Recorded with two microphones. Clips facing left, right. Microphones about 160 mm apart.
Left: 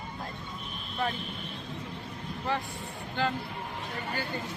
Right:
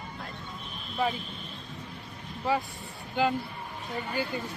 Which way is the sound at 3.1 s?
10° right (ahead or behind).